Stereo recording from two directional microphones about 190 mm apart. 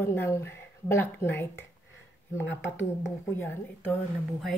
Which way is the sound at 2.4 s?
70° left (ahead or behind).